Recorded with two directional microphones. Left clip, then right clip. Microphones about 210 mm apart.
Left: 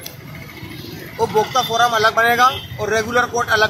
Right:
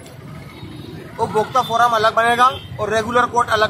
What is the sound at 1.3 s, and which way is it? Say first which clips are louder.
Speech: right 1 dB; 15° right (ahead or behind).